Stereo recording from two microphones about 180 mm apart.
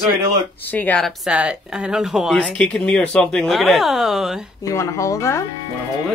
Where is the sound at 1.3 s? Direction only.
5° right (ahead or behind).